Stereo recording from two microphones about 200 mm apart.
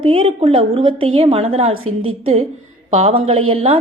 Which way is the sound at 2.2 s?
25° right (ahead or behind).